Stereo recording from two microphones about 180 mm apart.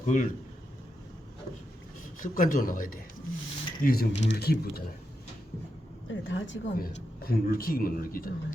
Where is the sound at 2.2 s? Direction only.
50° left (ahead or behind).